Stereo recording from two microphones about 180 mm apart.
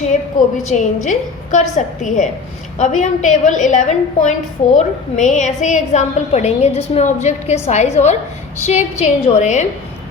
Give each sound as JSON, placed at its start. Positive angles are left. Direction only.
{"t": 0.4, "sound": "a woman's voice", "side_deg": 45}